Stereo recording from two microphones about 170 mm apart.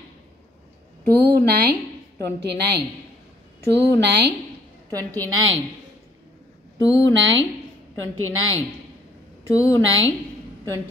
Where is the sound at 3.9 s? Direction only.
80° right.